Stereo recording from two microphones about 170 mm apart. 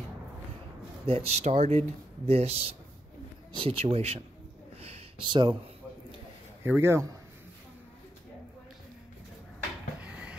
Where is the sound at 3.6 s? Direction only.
35° right (ahead or behind).